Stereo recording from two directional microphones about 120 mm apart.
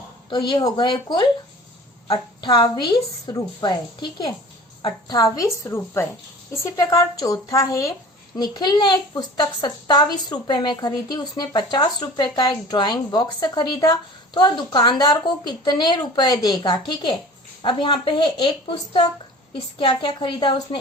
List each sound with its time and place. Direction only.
0.3 s speech: 35° left (ahead or behind)
2.4 s a woman's voice: 40° left (ahead or behind)